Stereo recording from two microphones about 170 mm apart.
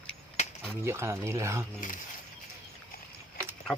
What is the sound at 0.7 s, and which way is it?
Speech, 15° right (ahead or behind).